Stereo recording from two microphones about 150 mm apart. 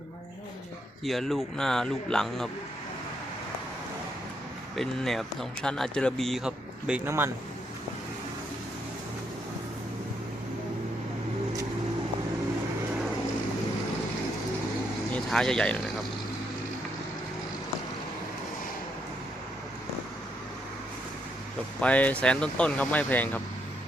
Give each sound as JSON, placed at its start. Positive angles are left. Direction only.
{"t": 1.0, "sound": "speech", "side_deg": 0}
{"t": 4.7, "sound": "speech", "side_deg": 0}
{"t": 15.1, "sound": "speech", "side_deg": 5}
{"t": 21.8, "sound": "speech", "side_deg": 10}